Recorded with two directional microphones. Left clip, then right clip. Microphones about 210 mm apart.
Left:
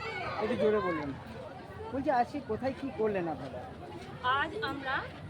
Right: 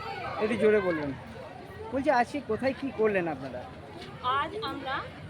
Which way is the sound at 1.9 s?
45° right (ahead or behind).